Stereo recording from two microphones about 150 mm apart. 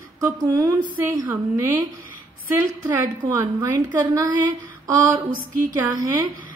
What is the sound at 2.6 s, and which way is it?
A woman's voice, 25° right (ahead or behind).